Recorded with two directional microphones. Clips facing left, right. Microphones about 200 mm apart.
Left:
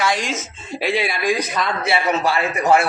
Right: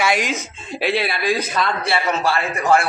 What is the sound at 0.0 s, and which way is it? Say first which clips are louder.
Speech: right 1 dB; 5° right (ahead or behind).